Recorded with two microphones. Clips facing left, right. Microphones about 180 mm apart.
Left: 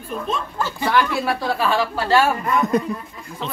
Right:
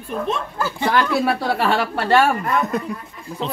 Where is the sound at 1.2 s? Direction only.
65° right (ahead or behind).